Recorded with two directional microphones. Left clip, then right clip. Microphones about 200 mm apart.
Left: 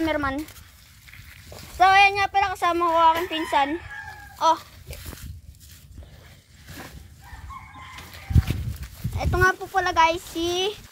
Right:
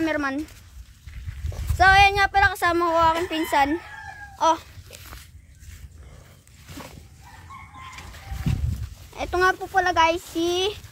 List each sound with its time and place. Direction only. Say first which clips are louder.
0.0 s speech: even; 10° right (ahead or behind)
1.8 s speech: right 1 dB; 10° right (ahead or behind)
4.4 s a child's voice: even; 30° right (ahead or behind)
9.1 s a child's voice: even; 25° right (ahead or behind)